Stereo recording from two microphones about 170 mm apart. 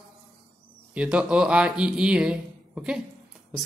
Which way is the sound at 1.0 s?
5° right (ahead or behind).